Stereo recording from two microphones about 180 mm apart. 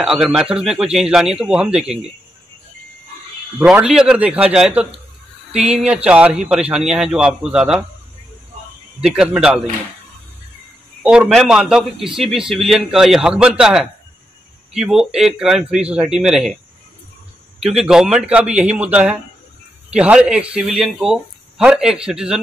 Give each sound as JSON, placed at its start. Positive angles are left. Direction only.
{"t": 0.0, "sound": "speech", "side_deg": -5}
{"t": 3.5, "sound": "speech", "side_deg": -5}
{"t": 9.1, "sound": "speech", "side_deg": -5}
{"t": 11.0, "sound": "speech", "side_deg": -5}
{"t": 17.6, "sound": "speech", "side_deg": 0}